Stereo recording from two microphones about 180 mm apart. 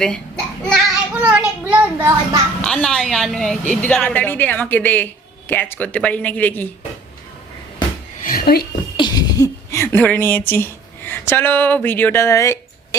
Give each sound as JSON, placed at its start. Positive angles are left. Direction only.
{"t": 0.0, "sound": "a sound", "side_deg": 5}
{"t": 1.7, "sound": "a child's voice", "side_deg": -15}
{"t": 2.6, "sound": "a woman's voice", "side_deg": 5}
{"t": 8.2, "sound": "speech", "side_deg": 55}
{"t": 9.0, "sound": "speech", "side_deg": 25}